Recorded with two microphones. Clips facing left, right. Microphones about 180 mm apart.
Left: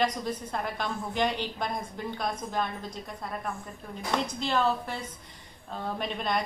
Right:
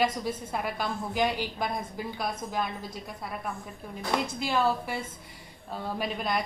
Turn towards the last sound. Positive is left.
turn(degrees=-5)  # may be behind; listen again after turning